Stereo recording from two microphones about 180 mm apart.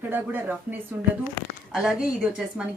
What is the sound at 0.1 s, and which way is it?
Speech, 10° right (ahead or behind).